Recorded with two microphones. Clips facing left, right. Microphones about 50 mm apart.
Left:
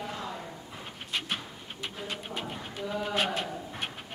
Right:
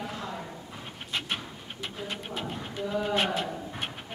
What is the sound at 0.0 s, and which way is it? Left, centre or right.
Clip-clop, centre.